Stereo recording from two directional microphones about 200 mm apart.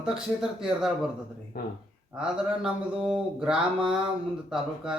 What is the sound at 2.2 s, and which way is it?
Speech, 5° right (ahead or behind).